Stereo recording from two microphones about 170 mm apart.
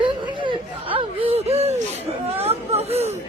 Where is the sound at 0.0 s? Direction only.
30° right (ahead or behind).